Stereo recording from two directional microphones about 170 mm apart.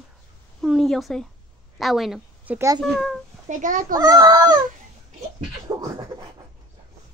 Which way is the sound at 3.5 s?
50° right (ahead or behind).